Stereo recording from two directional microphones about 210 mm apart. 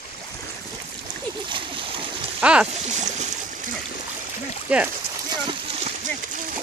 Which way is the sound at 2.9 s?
35° right (ahead or behind).